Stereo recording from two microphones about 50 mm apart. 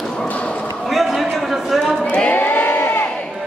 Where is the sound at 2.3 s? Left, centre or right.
Left.